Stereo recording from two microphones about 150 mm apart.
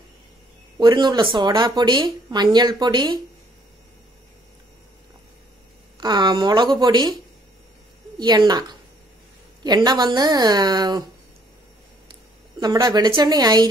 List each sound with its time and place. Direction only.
0.7 s speech: 30° right (ahead or behind)
5.9 s speech: 30° right (ahead or behind)
8.2 s speech: 30° right (ahead or behind)
12.1 s speech: 30° right (ahead or behind)